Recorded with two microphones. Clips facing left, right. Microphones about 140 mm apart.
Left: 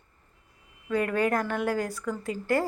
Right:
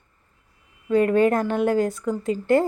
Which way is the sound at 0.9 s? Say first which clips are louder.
Right 8 dB; 25° right (ahead or behind).